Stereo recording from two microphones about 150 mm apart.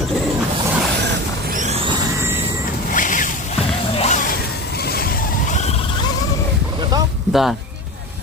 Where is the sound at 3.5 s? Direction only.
45° left (ahead or behind); by 5.3 s 80° left.